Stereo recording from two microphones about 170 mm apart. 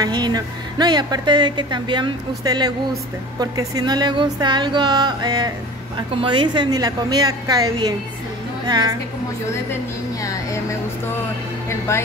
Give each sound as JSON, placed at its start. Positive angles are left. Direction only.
{"t": 0.0, "sound": "a woman's voice", "side_deg": -25}
{"t": 10.2, "sound": "speech", "side_deg": 15}
{"t": 11.9, "sound": "speech", "side_deg": 15}